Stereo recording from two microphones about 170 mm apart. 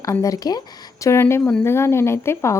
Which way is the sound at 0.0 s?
20° left (ahead or behind).